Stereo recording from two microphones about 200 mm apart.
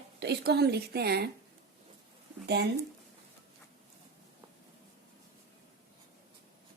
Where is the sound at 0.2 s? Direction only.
55° right (ahead or behind).